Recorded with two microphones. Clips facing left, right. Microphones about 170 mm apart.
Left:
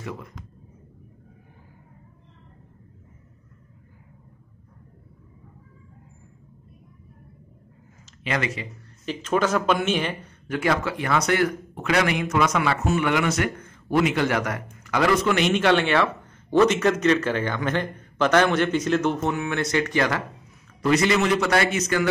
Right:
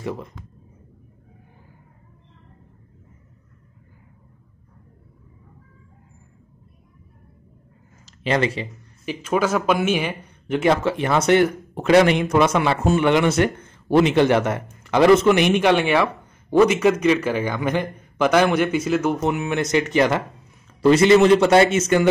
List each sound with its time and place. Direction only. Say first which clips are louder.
0.0 s speech: right 6 dB; 30° right (ahead or behind)
8.0 s a sound: right 6 dB; 30° right (ahead or behind)
9.0 s speech: right 2 dB; 10° right (ahead or behind)
10.5 s speech: right 5 dB; 25° right (ahead or behind)